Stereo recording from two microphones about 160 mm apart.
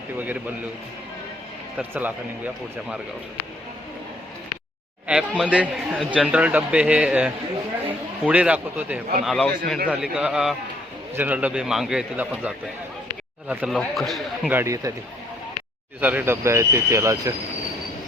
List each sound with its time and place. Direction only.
0.2 s a man's voice: 10° right (ahead or behind)
1.8 s a man's voice: 10° right (ahead or behind)
5.4 s a man's voice: 5° right (ahead or behind); by 9.9 s 10° left (ahead or behind)
9.9 s a man's voice: 5° right (ahead or behind)
14.5 s speech: 20° right (ahead or behind)
16.0 s a man's voice: 10° right (ahead or behind)